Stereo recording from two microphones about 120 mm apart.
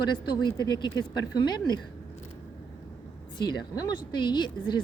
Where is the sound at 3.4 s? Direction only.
35° left (ahead or behind).